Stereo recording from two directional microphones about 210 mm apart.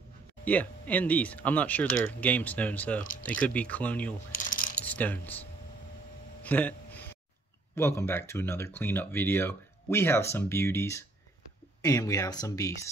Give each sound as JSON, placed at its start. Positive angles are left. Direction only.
{"t": 0.5, "sound": "speech", "side_deg": 5}
{"t": 3.0, "sound": "speech", "side_deg": 40}
{"t": 3.3, "sound": "speech", "side_deg": 5}
{"t": 4.5, "sound": "coin", "side_deg": 40}
{"t": 4.8, "sound": "speech", "side_deg": 5}
{"t": 6.4, "sound": "a sound", "side_deg": 5}
{"t": 7.7, "sound": "speech", "side_deg": 10}